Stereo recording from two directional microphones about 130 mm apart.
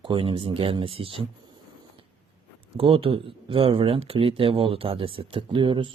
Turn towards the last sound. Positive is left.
turn(degrees=-40)  # may be behind; listen again after turning